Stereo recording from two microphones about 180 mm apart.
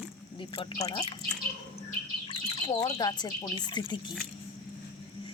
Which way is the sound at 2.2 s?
25° left (ahead or behind).